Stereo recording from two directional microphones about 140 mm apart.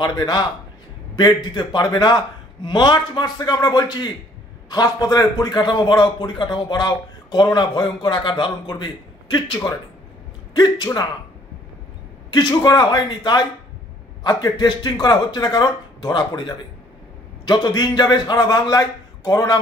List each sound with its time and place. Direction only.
0.0 s a man's voice: 30° left (ahead or behind)
12.3 s a man's voice: 30° left (ahead or behind)